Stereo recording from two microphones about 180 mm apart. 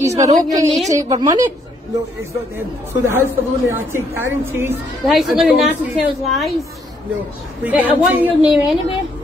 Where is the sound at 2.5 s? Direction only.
15° right (ahead or behind).